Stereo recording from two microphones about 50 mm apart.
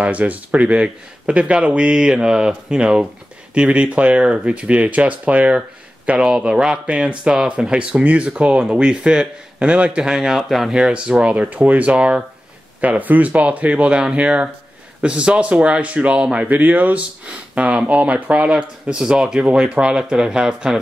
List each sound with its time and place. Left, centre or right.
0.0 s speech: right
10.1 s speech: centre
10.7 s speech: centre
11.3 s speech: right
16.4 s speech: right; by 20.8 s centre